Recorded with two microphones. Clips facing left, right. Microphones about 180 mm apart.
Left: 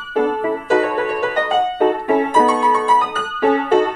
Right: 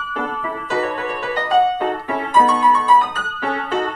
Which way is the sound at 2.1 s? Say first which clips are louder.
Left 3 dB; 50° left (ahead or behind).